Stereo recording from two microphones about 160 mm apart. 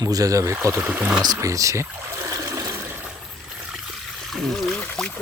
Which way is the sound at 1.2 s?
20° right (ahead or behind).